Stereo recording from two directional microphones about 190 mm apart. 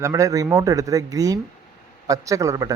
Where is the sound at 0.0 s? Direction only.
15° right (ahead or behind).